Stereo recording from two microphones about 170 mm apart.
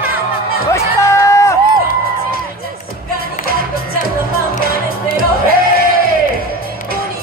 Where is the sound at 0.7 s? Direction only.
15° left (ahead or behind).